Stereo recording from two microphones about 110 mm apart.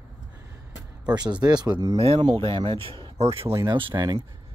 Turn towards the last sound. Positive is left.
turn(degrees=-35)  # may be behind; listen again after turning